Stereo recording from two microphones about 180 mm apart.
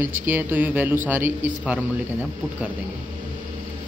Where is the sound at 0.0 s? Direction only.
10° right (ahead or behind).